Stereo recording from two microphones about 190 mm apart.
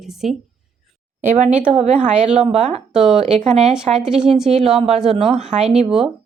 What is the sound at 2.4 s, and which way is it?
Speech, 35° right (ahead or behind).